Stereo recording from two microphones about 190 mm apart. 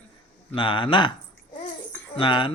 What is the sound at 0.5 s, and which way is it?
Speech, 25° left (ahead or behind).